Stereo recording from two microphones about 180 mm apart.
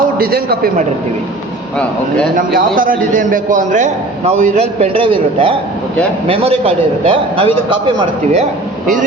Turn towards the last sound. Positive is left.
turn(degrees=-30)  # may be behind; listen again after turning